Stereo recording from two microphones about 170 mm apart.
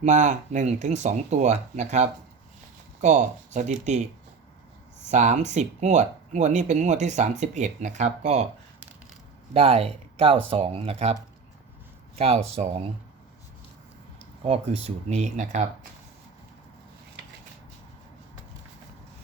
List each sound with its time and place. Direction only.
0.0 s speech: 45° right (ahead or behind)
5.1 s speech: 45° right (ahead or behind)
9.5 s speech: 35° right (ahead or behind)
14.4 s speech: 35° right (ahead or behind)